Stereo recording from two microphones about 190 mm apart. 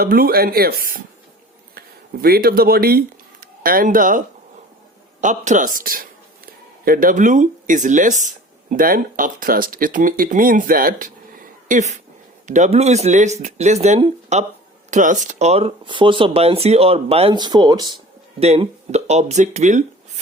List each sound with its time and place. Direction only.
0.0 s speech: 50° right (ahead or behind)
2.2 s speech: 55° right (ahead or behind)
5.2 s a man's voice: 40° right (ahead or behind); by 17.9 s 20° right (ahead or behind)
18.3 s speech: 35° right (ahead or behind)